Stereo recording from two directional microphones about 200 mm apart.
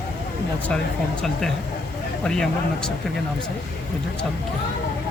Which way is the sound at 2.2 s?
5° left (ahead or behind).